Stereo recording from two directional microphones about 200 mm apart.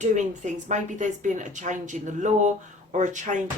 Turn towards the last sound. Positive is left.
turn(degrees=-35)  # may be behind; listen again after turning